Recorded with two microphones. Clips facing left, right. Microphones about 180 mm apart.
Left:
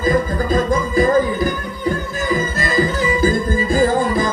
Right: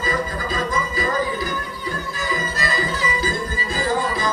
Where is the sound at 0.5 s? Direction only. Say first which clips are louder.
Left 9 dB; 50° left (ahead or behind).